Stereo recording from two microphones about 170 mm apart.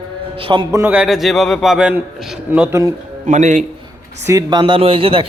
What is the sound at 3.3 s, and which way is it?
Speech, 45° right (ahead or behind).